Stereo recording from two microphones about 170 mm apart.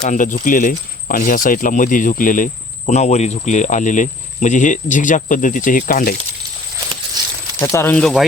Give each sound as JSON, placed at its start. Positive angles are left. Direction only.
{"t": 0.0, "sound": "speech", "side_deg": 45}
{"t": 7.6, "sound": "speech", "side_deg": 15}